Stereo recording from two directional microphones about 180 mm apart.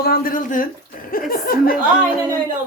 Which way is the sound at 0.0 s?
55° left (ahead or behind).